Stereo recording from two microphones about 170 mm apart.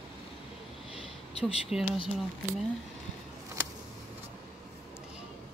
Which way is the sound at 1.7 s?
5° right (ahead or behind).